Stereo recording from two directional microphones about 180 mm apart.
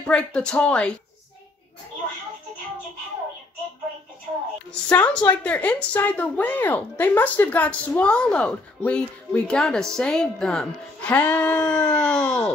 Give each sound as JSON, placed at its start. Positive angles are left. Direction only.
{"t": 0.0, "sound": "speech", "side_deg": 5}
{"t": 4.8, "sound": "speech", "side_deg": 10}